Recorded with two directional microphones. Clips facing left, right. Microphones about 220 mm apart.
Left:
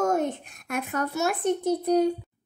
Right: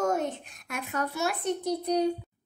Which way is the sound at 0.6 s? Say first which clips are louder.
Left 4 dB; 50° left (ahead or behind).